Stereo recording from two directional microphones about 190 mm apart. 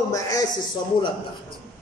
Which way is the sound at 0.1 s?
20° left (ahead or behind).